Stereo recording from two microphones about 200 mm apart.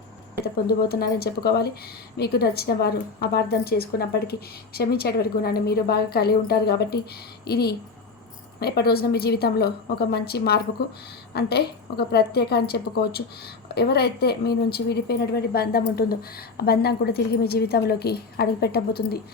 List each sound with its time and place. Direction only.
0.4 s a woman's voice: 50° left (ahead or behind)